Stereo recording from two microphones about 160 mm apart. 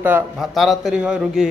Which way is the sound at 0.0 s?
10° right (ahead or behind).